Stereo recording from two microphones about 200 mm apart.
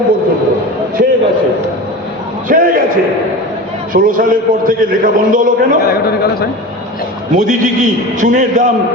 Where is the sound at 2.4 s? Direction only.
40° right (ahead or behind).